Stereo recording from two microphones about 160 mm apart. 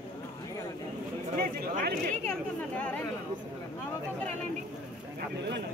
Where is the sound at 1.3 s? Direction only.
65° right (ahead or behind).